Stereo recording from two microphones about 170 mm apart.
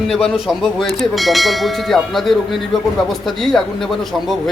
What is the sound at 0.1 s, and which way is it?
Speech, centre (ahead or behind).